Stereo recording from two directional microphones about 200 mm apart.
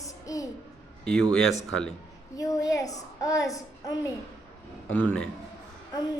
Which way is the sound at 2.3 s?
15° left (ahead or behind).